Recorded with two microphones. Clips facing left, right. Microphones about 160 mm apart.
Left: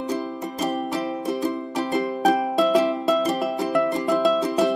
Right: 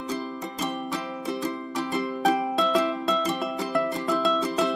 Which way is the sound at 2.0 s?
40° left (ahead or behind).